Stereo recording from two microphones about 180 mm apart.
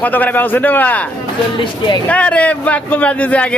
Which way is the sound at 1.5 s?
25° left (ahead or behind).